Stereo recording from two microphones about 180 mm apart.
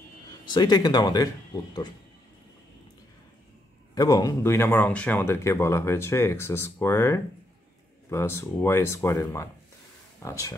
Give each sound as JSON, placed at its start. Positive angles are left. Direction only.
{"t": 0.5, "sound": "speech", "side_deg": 20}
{"t": 3.9, "sound": "speech", "side_deg": 20}